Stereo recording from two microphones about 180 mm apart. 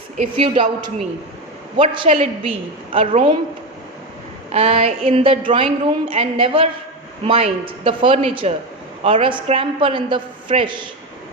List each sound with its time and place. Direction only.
0.2 s a woman's voice: 30° right (ahead or behind)
1.8 s a woman's voice: 30° right (ahead or behind)
4.5 s a woman's voice: 35° right (ahead or behind)